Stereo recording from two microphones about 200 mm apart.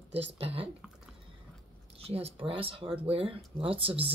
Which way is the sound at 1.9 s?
30° right (ahead or behind).